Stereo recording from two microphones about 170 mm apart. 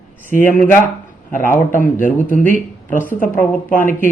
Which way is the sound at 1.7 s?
50° left (ahead or behind).